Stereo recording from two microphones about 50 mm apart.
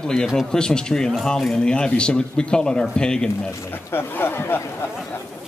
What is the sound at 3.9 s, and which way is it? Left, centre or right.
Speech, left.